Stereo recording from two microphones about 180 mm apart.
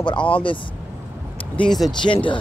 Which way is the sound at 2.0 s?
25° left (ahead or behind).